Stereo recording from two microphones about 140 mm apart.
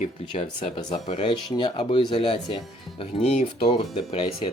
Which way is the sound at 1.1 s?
55° left (ahead or behind).